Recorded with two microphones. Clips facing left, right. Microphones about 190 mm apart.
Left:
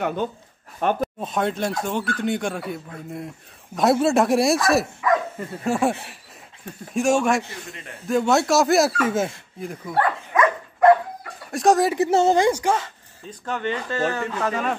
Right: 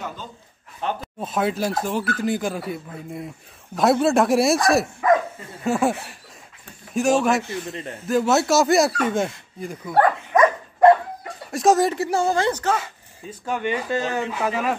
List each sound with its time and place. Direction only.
0.0 s speech: 60° left (ahead or behind)
1.2 s speech: 5° right (ahead or behind)
10.3 s dog: 40° right (ahead or behind)
11.5 s speech: centre (ahead or behind)
11.9 s a woman's voice: 20° left (ahead or behind)
12.4 s speech: 10° left (ahead or behind)
12.7 s speech: 10° right (ahead or behind)